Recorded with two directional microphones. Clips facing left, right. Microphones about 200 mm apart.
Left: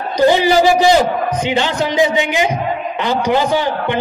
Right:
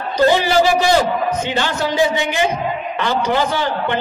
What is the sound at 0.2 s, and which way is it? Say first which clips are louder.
A man's voice: left 2 dB; 15° left (ahead or behind).